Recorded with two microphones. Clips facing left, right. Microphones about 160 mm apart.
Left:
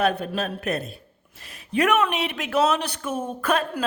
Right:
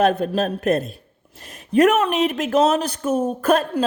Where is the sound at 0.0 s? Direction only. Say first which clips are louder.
Right 5 dB; 45° right (ahead or behind).